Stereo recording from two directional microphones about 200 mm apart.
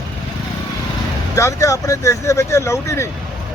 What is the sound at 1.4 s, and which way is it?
Speech, 15° left (ahead or behind).